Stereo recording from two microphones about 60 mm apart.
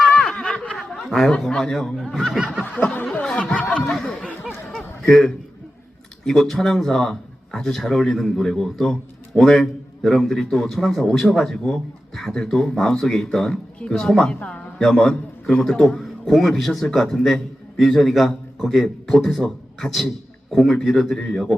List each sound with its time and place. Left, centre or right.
0.3 s snicker: centre
0.7 s snicker: centre
1.4 s speech: centre
2.8 s snicker: left
3.2 s snicker: centre
3.8 s speech: centre
4.7 s a sound: centre
6.2 s a man's voice: centre
14.8 s a man's voice: centre